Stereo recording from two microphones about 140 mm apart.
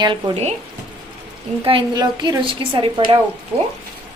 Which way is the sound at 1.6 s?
35° right (ahead or behind).